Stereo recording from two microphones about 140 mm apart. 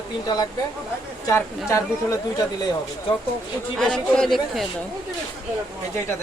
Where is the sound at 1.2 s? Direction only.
20° left (ahead or behind).